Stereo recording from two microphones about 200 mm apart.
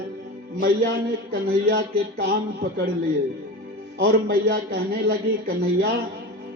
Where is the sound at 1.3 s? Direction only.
50° right (ahead or behind).